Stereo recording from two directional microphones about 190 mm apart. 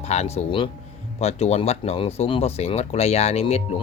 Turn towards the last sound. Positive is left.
turn(degrees=35)  # may be behind; listen again after turning